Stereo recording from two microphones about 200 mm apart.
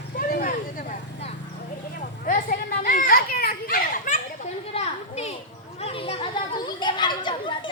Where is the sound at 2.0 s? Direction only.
40° left (ahead or behind).